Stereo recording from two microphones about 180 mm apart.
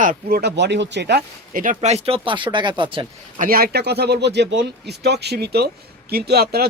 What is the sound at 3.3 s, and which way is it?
Speech, 50° right (ahead or behind).